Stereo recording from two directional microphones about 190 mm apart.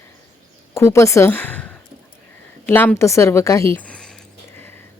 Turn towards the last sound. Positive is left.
turn(degrees=10)  # may be behind; listen again after turning